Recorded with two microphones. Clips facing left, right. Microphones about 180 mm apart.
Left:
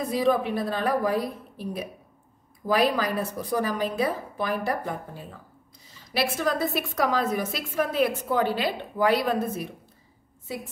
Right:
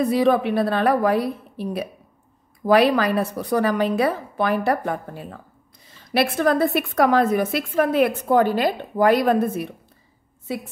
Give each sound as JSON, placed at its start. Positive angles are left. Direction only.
{"t": 0.0, "sound": "a woman's voice", "side_deg": -70}
{"t": 5.9, "sound": "a woman's voice", "side_deg": -60}